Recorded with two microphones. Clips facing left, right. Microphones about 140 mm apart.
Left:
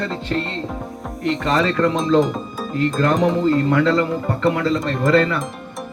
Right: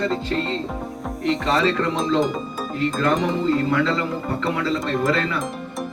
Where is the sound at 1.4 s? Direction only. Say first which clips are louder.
Left 2 dB; 45° left (ahead or behind).